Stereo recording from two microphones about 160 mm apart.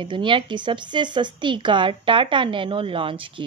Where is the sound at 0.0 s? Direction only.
30° right (ahead or behind).